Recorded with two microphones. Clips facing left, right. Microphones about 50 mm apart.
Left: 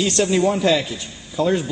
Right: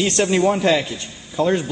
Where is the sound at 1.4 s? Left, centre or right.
Right.